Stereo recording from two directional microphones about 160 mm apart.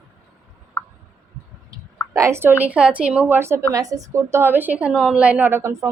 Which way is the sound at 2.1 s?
15° right (ahead or behind).